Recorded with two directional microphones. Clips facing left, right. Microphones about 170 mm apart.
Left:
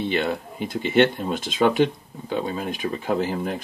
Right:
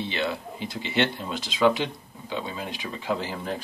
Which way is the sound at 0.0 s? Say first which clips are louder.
Left 5 dB; 50° left (ahead or behind).